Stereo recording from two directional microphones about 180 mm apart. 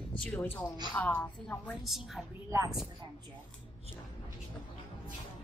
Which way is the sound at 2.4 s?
15° right (ahead or behind).